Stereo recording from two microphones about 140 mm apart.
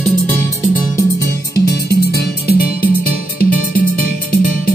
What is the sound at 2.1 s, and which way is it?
Music, 90° left.